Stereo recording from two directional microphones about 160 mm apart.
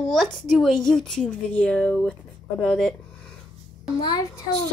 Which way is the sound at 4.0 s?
25° left (ahead or behind).